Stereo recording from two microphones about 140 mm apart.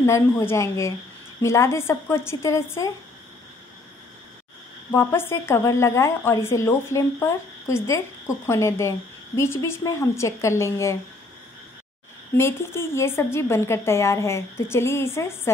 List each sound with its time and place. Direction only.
0.0 s speech: 20° left (ahead or behind)
4.9 s speech: 15° left (ahead or behind)
12.4 s speech: 20° left (ahead or behind)